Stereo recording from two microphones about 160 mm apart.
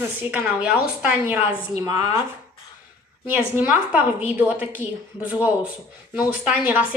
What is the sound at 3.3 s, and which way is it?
A woman's voice, 10° right (ahead or behind).